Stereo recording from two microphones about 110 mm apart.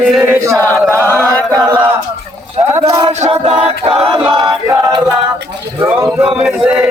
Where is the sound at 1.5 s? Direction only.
35° right (ahead or behind).